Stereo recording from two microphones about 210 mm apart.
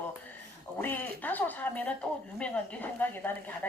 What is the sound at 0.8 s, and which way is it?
Speech, 10° left (ahead or behind).